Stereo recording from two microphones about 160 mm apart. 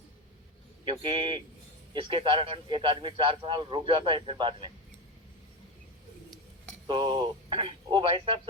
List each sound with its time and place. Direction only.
0.9 s a man's voice: 35° right (ahead or behind)
6.8 s speech: 30° right (ahead or behind)